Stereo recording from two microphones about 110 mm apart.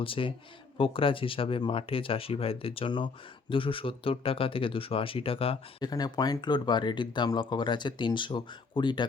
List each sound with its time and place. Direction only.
0.0 s speech: 55° left (ahead or behind)
5.8 s speech: 35° left (ahead or behind)